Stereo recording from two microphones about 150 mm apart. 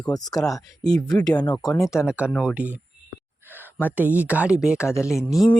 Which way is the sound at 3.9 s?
10° right (ahead or behind).